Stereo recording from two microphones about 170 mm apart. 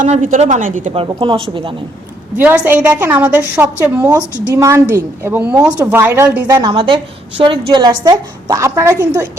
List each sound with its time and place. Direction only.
0.0 s a woman's voice: 50° right (ahead or behind)
1.0 s a woman's voice: 30° right (ahead or behind)
2.4 s a woman's voice: 10° right (ahead or behind)